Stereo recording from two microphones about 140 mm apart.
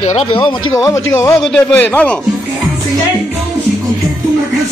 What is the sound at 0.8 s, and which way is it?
Speech, 25° left (ahead or behind).